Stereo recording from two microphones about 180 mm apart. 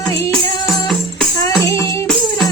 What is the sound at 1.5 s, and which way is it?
Music, 15° left (ahead or behind).